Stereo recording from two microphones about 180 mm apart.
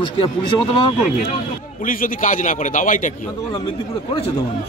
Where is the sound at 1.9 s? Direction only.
50° left (ahead or behind).